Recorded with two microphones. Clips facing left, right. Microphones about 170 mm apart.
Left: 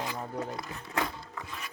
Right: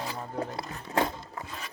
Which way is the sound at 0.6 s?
30° right (ahead or behind).